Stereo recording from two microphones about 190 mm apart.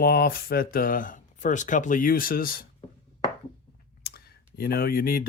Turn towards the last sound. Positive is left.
turn(degrees=50)  # may be behind; listen again after turning